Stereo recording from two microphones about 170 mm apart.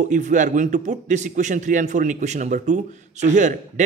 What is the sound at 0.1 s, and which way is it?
A man's voice, 45° right (ahead or behind).